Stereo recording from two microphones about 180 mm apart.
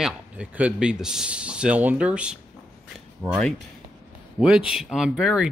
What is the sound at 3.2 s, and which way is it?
Speech, 15° right (ahead or behind).